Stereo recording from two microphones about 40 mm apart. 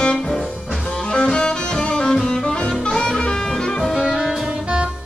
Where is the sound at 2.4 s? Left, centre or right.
Left.